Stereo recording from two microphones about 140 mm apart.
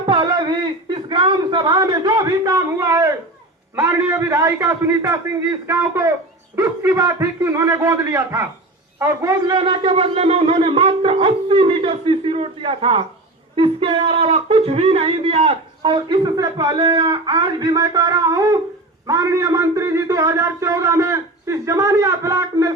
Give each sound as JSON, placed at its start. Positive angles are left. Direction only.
{"t": 0.0, "sound": "speech", "side_deg": -35}
{"t": 9.6, "sound": "speech", "side_deg": -40}